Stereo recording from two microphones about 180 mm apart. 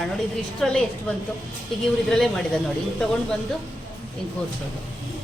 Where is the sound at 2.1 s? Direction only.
5° left (ahead or behind).